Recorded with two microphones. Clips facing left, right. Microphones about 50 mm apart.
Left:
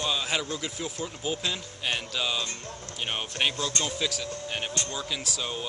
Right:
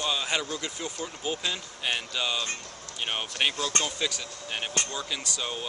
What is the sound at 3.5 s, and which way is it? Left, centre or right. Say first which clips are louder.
Speech: right 1 dB; right.